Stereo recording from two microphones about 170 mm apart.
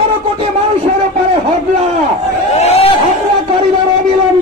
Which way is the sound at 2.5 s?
40° left (ahead or behind).